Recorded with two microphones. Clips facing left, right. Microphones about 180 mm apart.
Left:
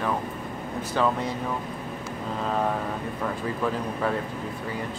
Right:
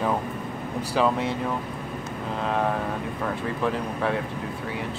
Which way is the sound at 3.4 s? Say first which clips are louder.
Right 1 dB; centre (ahead or behind).